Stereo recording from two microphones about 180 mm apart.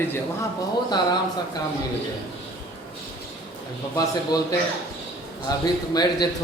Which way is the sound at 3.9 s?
20° left (ahead or behind).